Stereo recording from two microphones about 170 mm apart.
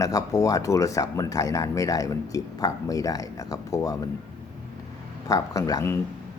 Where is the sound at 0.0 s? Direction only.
20° left (ahead or behind).